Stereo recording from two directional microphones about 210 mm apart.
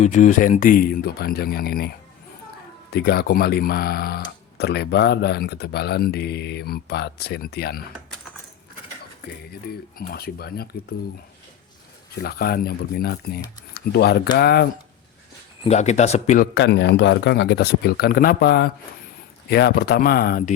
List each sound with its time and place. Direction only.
0.0 s speech: 35° left (ahead or behind)
2.9 s speech: 50° left (ahead or behind)
9.7 s speech: 50° left (ahead or behind)
12.2 s speech: 50° left (ahead or behind)
15.6 s speech: 30° left (ahead or behind)
16.6 s speech: 55° left (ahead or behind)